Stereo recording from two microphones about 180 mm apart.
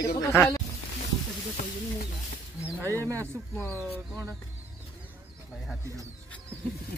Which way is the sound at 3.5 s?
10° left (ahead or behind).